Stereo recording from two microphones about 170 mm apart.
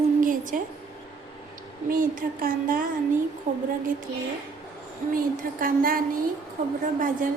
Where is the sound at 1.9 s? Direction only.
55° right (ahead or behind).